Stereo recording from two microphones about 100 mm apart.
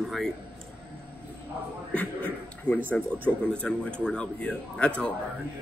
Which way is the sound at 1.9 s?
10° left (ahead or behind).